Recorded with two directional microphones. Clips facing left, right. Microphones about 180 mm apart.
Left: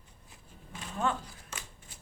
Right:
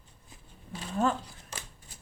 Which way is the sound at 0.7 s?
35° right (ahead or behind).